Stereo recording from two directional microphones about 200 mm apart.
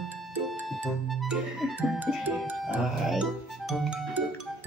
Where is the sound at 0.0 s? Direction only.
Centre (ahead or behind).